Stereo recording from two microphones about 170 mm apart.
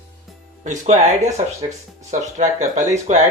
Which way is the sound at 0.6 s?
45° right (ahead or behind).